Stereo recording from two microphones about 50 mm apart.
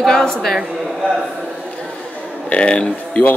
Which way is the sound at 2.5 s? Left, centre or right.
Left.